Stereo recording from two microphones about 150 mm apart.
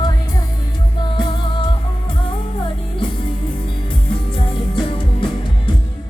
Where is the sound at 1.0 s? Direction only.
30° left (ahead or behind).